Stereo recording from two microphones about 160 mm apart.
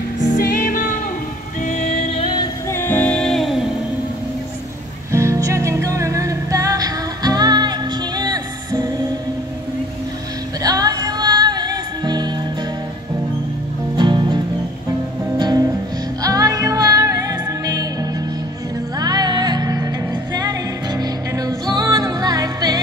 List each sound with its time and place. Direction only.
0.2 s music: 55° left (ahead or behind)
1.7 s music: 45° left (ahead or behind)
2.7 s music: 10° left (ahead or behind)
5.1 s music: 20° right (ahead or behind)
10.6 s music: 25° right (ahead or behind)
13.9 s music: 30° right (ahead or behind)
18.9 s music: 25° right (ahead or behind)
21.0 s music: 25° right (ahead or behind)